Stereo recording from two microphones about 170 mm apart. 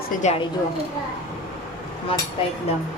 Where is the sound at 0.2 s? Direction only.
40° left (ahead or behind).